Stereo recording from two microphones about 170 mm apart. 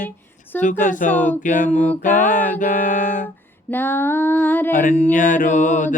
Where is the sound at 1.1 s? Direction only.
50° left (ahead or behind).